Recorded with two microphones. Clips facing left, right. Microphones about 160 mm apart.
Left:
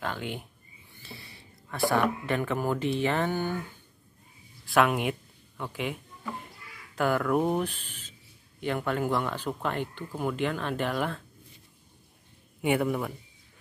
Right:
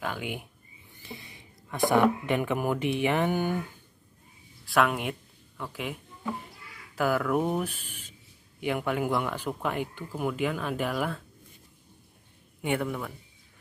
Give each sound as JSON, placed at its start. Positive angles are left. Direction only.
{"t": 0.0, "sound": "speech", "side_deg": -10}
{"t": 4.6, "sound": "speech", "side_deg": 0}
{"t": 12.6, "sound": "speech", "side_deg": 10}